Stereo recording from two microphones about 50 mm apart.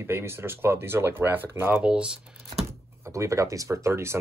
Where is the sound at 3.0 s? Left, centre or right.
Right.